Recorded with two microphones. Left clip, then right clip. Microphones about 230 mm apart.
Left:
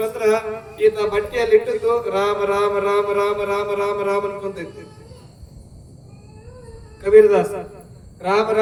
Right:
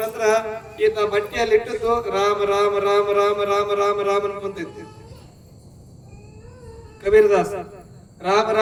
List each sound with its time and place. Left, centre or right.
0.2 s a man's voice: right
7.0 s a man's voice: right